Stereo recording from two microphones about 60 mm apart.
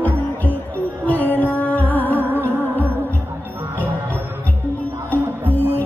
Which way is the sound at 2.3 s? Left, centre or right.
Right.